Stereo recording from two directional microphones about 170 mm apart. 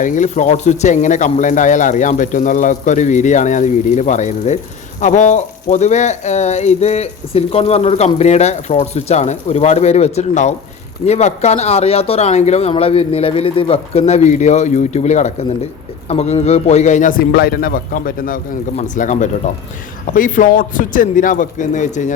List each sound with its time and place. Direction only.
0.0 s speech: 50° left (ahead or behind)